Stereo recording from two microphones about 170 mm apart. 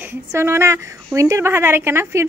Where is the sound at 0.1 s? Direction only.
15° right (ahead or behind).